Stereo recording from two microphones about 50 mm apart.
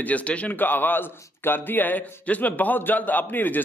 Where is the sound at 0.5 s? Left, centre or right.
Left.